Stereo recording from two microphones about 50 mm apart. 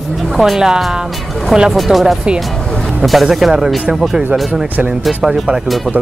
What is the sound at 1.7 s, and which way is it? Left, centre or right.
Speech, centre.